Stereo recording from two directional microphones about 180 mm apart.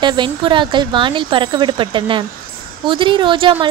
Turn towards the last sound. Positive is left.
turn(degrees=-25)  # may be behind; listen again after turning